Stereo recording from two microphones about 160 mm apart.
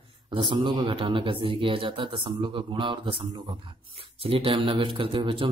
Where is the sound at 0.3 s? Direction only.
30° right (ahead or behind).